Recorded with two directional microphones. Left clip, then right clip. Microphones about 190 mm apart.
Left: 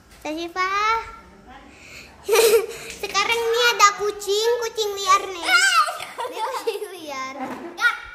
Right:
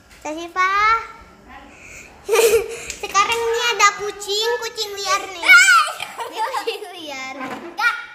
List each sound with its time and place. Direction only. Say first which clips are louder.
0.2 s a child's voice: right 4 dB; 10° left (ahead or behind)
0.7 s a child's voice: right 5 dB; 25° left (ahead or behind)
2.2 s laughter: right 1 dB; 10° left (ahead or behind)
3.3 s child singing: even; 10° left (ahead or behind)
6.4 s a sound: right 3 dB; centre (ahead or behind)